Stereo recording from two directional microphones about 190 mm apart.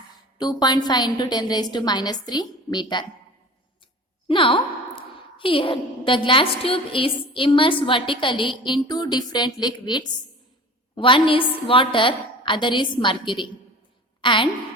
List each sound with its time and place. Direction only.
0.3 s a woman's voice: 20° left (ahead or behind)
4.3 s a woman's voice: 25° left (ahead or behind)